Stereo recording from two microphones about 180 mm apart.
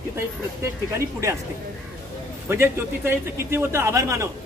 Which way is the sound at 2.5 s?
15° right (ahead or behind).